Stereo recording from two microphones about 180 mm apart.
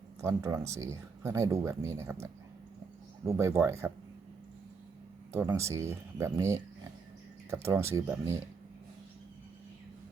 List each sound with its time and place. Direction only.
0.2 s speech: 15° right (ahead or behind)
5.3 s speech: 10° right (ahead or behind)